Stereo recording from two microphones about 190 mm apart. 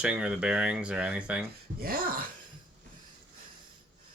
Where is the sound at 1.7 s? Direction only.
50° right (ahead or behind).